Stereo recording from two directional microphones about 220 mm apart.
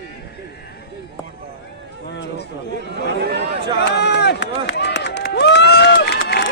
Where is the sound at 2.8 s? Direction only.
50° right (ahead or behind).